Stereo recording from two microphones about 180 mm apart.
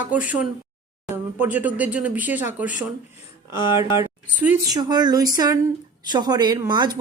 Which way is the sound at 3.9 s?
10° right (ahead or behind).